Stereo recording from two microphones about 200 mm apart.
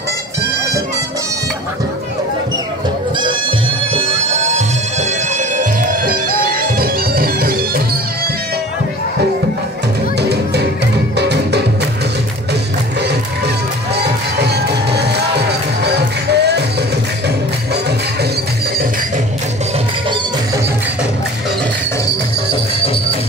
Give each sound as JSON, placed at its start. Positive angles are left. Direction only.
{"t": 3.2, "sound": "music", "side_deg": -25}
{"t": 10.1, "sound": "music", "side_deg": -55}
{"t": 13.9, "sound": "music", "side_deg": -55}